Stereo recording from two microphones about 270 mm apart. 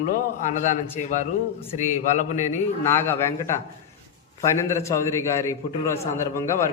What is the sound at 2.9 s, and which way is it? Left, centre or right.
Speech, centre.